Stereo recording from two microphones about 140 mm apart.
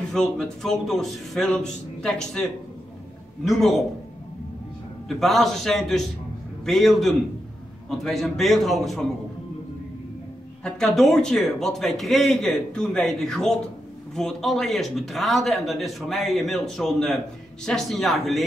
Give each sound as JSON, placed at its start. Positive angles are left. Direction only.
{"t": 0.1, "sound": "a man's voice", "side_deg": 5}
{"t": 3.4, "sound": "a man's voice", "side_deg": 0}
{"t": 5.0, "sound": "a man's voice", "side_deg": 0}
{"t": 10.6, "sound": "a man's voice", "side_deg": 0}